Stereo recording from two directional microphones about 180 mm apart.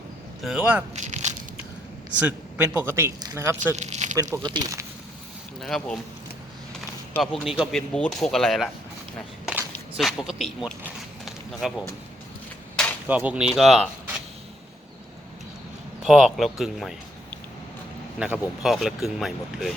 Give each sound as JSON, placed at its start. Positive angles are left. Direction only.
{"t": 0.4, "sound": "speech", "side_deg": -5}
{"t": 0.9, "sound": "a sound", "side_deg": -40}
{"t": 2.1, "sound": "speech", "side_deg": -5}
{"t": 3.8, "sound": "squish", "side_deg": -40}
{"t": 4.2, "sound": "speech", "side_deg": -20}
{"t": 5.6, "sound": "speech", "side_deg": 0}
{"t": 7.2, "sound": "speech", "side_deg": -5}
{"t": 9.7, "sound": "a sound", "side_deg": 0}
{"t": 11.6, "sound": "speech", "side_deg": 0}
{"t": 13.1, "sound": "speech", "side_deg": -10}
{"t": 16.0, "sound": "speech", "side_deg": -5}
{"t": 18.2, "sound": "speech", "side_deg": -5}